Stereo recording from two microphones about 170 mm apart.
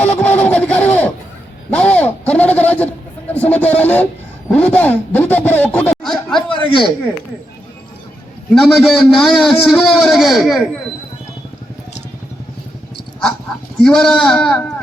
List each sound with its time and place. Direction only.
0.0 s a sound: 10° left (ahead or behind)
3.3 s music: 10° left (ahead or behind)
4.4 s speech: 10° left (ahead or behind)
6.5 s a sound: 30° left (ahead or behind)
8.5 s a man's voice: centre (ahead or behind)
13.8 s a man's voice: 5° left (ahead or behind)